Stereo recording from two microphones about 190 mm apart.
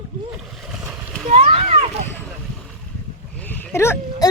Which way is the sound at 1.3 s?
35° right (ahead or behind).